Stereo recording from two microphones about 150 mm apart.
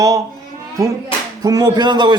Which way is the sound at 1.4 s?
25° right (ahead or behind).